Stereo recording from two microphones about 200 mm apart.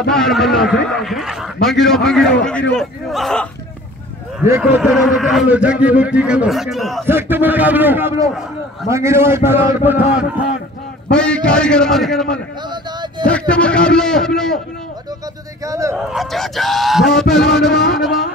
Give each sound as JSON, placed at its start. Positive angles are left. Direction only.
{"t": 0.1, "sound": "a man's voice", "side_deg": 0}
{"t": 4.5, "sound": "a man's voice", "side_deg": -10}
{"t": 7.1, "sound": "a man's voice", "side_deg": -10}
{"t": 11.1, "sound": "a man's voice", "side_deg": 5}
{"t": 15.6, "sound": "a man's voice", "side_deg": -15}
{"t": 16.0, "sound": "a man's voice", "side_deg": 0}